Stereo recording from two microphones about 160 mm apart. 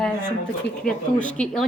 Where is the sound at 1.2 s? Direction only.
5° left (ahead or behind).